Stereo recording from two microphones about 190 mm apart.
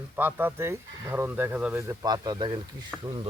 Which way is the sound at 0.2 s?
10° right (ahead or behind).